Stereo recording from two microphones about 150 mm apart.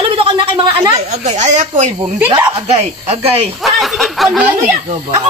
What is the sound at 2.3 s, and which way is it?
Speech, 40° right (ahead or behind).